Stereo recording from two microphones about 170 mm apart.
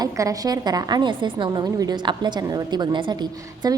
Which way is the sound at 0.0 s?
20° right (ahead or behind).